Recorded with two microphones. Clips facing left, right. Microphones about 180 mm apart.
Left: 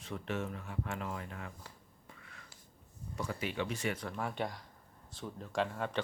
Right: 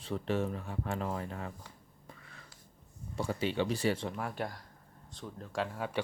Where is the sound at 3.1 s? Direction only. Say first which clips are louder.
Right 5 dB; 30° right (ahead or behind).